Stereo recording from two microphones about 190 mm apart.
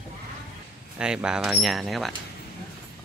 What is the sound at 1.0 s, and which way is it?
Speech, 5° right (ahead or behind).